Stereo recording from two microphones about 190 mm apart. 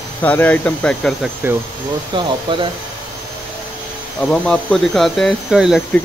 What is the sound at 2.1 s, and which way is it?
Speech, 25° right (ahead or behind).